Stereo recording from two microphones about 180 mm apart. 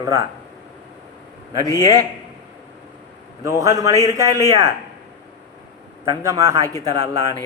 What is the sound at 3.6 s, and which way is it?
A man's voice, 20° right (ahead or behind).